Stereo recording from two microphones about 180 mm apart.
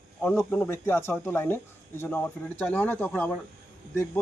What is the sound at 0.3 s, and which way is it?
Speech, 10° left (ahead or behind).